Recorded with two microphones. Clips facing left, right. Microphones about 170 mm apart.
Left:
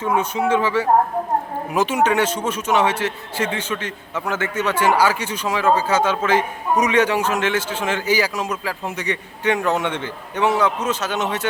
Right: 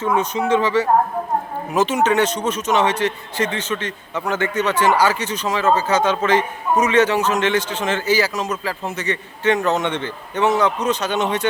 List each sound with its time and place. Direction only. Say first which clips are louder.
0.0 s a man's voice: even; 10° left (ahead or behind)